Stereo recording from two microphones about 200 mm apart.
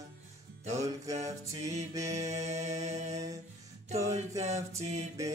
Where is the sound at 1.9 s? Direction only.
15° right (ahead or behind).